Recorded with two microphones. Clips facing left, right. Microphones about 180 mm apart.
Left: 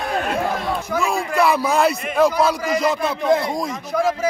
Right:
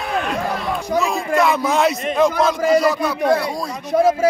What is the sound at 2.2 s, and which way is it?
Speech, 5° left (ahead or behind).